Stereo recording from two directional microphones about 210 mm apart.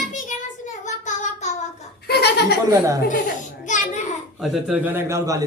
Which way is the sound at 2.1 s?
50° left (ahead or behind).